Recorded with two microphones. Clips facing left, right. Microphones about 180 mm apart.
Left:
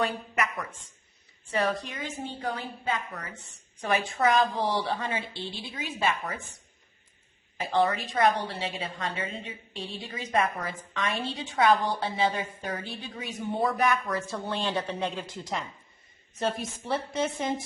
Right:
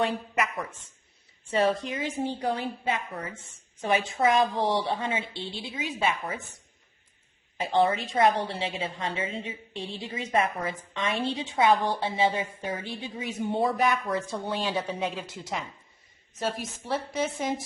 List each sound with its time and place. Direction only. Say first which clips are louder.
0.0 s a woman's voice: right 2 dB; 25° right (ahead or behind)
7.6 s a woman's voice: right 2 dB; 25° right (ahead or behind)
14.3 s a woman's voice: right 1 dB; 10° right (ahead or behind)